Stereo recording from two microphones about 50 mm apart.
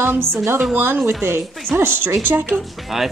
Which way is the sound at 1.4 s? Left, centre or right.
Centre.